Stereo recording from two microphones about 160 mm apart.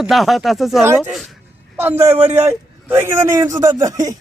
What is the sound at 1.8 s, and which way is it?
A man's voice, 15° right (ahead or behind).